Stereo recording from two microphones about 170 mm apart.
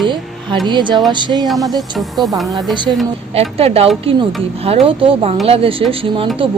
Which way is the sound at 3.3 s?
35° right (ahead or behind).